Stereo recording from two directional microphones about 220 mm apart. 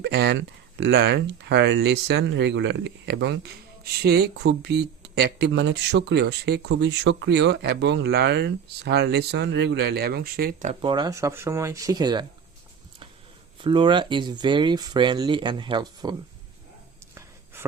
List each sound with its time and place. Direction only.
0.0 s speech: 50° right (ahead or behind)
10.8 s speech: 20° right (ahead or behind)
13.6 s speech: 20° right (ahead or behind)
17.2 s a sound: 10° right (ahead or behind)